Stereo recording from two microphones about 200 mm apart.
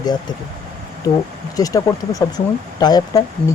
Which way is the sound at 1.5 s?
15° left (ahead or behind).